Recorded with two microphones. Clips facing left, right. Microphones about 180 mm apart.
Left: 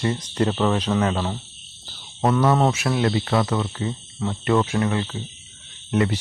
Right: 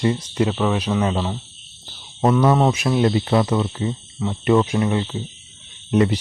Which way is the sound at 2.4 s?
15° right (ahead or behind).